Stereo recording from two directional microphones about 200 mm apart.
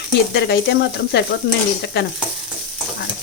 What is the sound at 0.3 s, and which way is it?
Speech, 55° left (ahead or behind).